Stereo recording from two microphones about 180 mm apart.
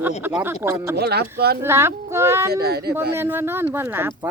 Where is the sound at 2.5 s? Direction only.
60° right (ahead or behind).